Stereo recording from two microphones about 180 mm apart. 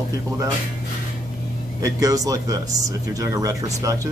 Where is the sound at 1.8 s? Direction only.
20° right (ahead or behind).